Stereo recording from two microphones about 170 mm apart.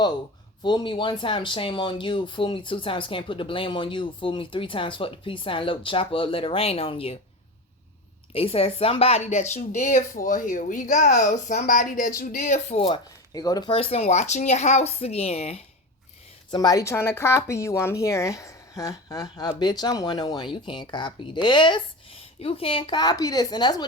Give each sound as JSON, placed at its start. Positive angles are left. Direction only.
{"t": 0.6, "sound": "speech", "side_deg": 30}
{"t": 8.3, "sound": "speech", "side_deg": 35}
{"t": 13.3, "sound": "speech", "side_deg": 20}
{"t": 16.5, "sound": "speech", "side_deg": 20}